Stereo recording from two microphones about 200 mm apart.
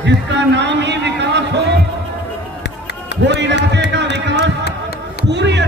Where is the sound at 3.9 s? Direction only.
60° right (ahead or behind).